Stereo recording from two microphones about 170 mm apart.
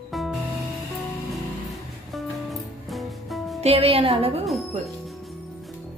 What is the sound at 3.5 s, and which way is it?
Speech, 35° right (ahead or behind).